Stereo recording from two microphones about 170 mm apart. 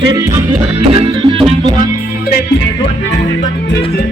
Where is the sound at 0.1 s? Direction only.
20° right (ahead or behind).